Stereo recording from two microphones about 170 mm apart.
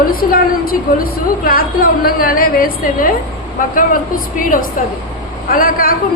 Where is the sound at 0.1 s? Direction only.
60° left (ahead or behind).